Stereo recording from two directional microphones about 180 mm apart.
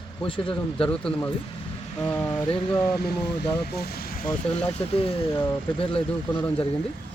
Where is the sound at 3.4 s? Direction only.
60° left (ahead or behind).